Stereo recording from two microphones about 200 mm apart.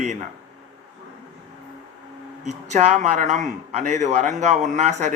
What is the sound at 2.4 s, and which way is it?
A man's voice, 35° right (ahead or behind).